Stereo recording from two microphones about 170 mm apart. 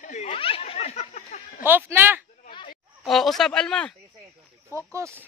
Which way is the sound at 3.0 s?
Centre (ahead or behind).